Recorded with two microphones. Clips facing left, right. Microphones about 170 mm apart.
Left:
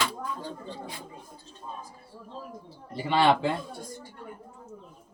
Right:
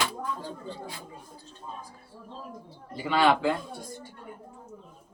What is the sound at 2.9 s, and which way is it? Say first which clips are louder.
Speech: left 1 dB; 30° left (ahead or behind).